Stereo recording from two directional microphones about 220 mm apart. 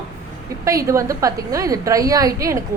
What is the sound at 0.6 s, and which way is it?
A woman's voice, 15° right (ahead or behind).